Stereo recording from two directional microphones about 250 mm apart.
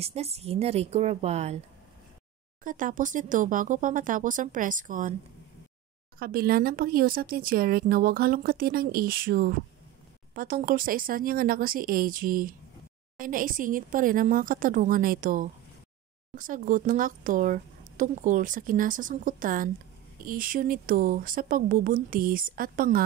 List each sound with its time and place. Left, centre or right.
0.0 s a woman's voice: right
2.6 s speech: right
6.1 s speech: right